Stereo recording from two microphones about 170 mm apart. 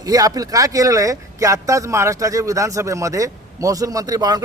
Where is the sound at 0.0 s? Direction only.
20° right (ahead or behind).